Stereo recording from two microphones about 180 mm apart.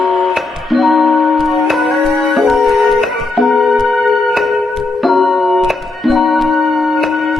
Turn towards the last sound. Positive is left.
turn(degrees=0)  # may be behind; listen again after turning